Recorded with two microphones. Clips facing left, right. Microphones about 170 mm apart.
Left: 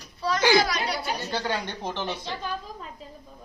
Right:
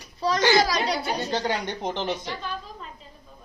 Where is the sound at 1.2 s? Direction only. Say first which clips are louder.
Right 3 dB; 20° right (ahead or behind).